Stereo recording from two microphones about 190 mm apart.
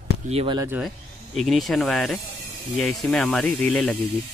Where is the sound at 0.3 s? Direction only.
30° right (ahead or behind).